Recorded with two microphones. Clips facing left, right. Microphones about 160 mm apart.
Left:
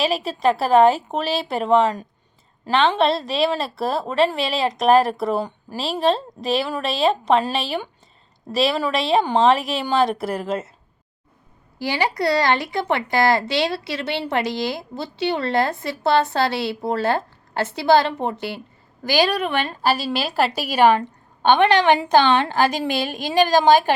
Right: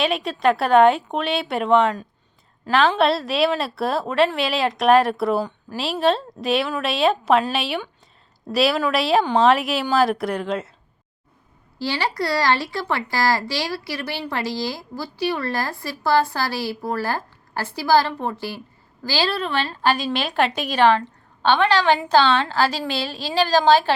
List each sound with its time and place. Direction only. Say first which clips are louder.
0.0 s a woman's voice: even; centre (ahead or behind)
11.8 s a woman's voice: left 2 dB; 15° left (ahead or behind)